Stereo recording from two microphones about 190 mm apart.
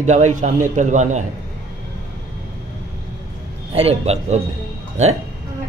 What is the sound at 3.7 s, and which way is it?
Speech, 30° right (ahead or behind).